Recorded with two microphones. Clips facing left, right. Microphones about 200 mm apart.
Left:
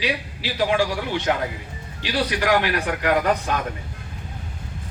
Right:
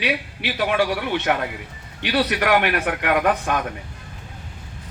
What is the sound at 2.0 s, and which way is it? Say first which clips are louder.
A man's voice: right 2 dB; 65° right (ahead or behind).